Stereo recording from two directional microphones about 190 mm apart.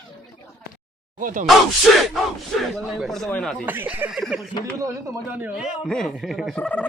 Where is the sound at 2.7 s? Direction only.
Centre (ahead or behind).